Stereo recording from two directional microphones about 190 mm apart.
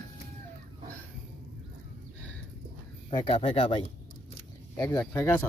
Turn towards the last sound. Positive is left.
turn(degrees=20)  # may be behind; listen again after turning